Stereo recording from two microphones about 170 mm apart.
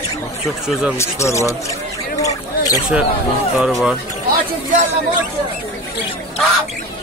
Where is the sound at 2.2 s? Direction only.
20° left (ahead or behind).